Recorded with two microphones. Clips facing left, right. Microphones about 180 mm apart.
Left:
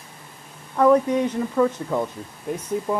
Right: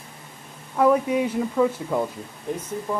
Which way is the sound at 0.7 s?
10° right (ahead or behind).